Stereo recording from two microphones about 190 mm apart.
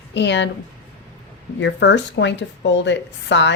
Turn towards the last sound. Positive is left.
turn(degrees=70)  # may be behind; listen again after turning